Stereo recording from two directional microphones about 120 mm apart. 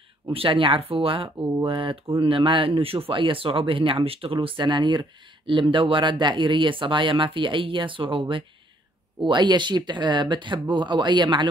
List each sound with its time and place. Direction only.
0.3 s speech: 50° right (ahead or behind)